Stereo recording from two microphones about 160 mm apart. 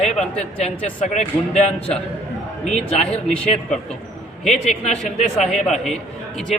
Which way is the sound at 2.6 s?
45° left (ahead or behind).